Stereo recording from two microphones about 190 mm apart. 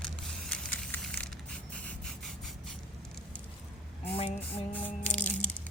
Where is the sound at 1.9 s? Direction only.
Centre (ahead or behind).